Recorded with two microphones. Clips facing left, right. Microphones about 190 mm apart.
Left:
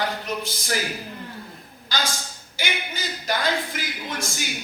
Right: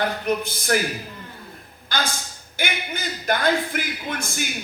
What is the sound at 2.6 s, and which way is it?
A man's voice, 55° right (ahead or behind).